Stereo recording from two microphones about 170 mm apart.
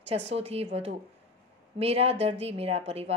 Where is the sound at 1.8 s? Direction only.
35° right (ahead or behind).